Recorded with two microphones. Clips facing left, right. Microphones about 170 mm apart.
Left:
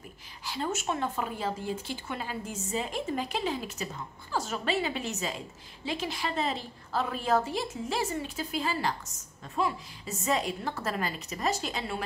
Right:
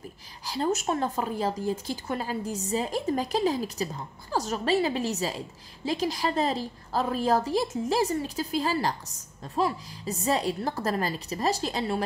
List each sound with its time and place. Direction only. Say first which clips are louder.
0.5 s a woman's voice: right 5 dB; 35° right (ahead or behind)